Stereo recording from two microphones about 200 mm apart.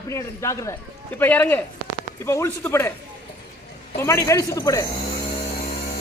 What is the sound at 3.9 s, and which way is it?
Speech, 15° left (ahead or behind).